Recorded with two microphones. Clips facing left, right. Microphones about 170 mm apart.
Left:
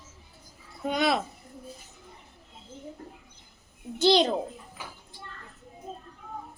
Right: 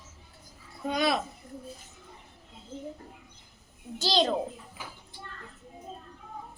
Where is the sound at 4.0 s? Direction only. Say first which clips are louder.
Left 5 dB; 15° left (ahead or behind).